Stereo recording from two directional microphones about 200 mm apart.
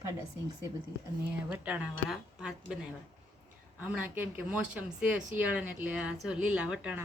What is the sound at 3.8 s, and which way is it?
A woman's voice, 10° right (ahead or behind).